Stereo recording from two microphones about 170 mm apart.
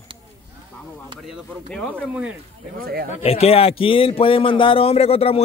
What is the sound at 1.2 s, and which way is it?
Speech, centre (ahead or behind).